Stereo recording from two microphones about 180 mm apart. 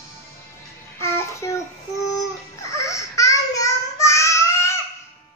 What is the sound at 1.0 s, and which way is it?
Child singing, 15° left (ahead or behind).